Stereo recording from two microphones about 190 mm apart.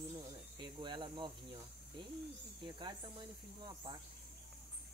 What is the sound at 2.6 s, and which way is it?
Speech, 25° right (ahead or behind).